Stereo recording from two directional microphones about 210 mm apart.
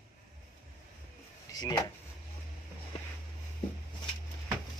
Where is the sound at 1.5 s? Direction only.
20° left (ahead or behind).